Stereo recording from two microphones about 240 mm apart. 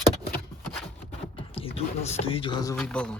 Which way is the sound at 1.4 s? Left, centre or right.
Left.